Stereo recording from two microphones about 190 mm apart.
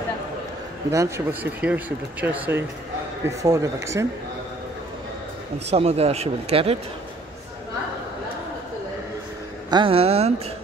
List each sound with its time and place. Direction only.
0.9 s speech: 10° right (ahead or behind)
5.7 s speech: 35° right (ahead or behind)
9.7 s speech: 25° right (ahead or behind)